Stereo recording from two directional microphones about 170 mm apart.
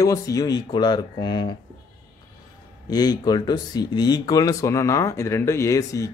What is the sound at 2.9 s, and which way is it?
Speech, 25° left (ahead or behind).